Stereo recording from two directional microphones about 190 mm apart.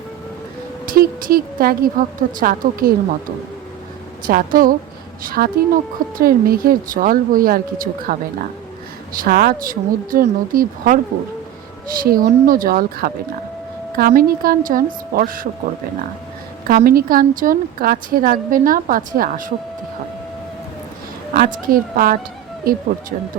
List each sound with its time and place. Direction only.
0.9 s a woman's voice: 50° right (ahead or behind)
4.3 s a woman's voice: 50° right (ahead or behind)
9.2 s a woman's voice: 50° right (ahead or behind)
12.0 s a woman's voice: 50° right (ahead or behind)
16.6 s a woman's voice: 50° right (ahead or behind)
21.3 s a woman's voice: 50° right (ahead or behind)